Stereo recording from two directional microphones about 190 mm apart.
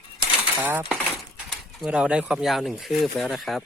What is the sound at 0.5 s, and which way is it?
Speech, 10° right (ahead or behind).